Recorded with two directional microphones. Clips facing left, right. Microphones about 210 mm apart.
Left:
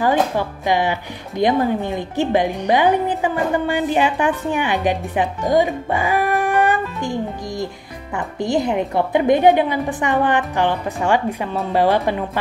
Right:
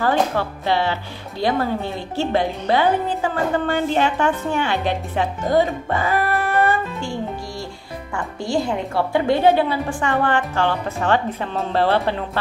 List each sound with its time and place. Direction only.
0.0 s speech: 15° left (ahead or behind)